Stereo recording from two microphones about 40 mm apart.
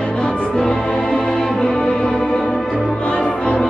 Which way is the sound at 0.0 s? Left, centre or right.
Left.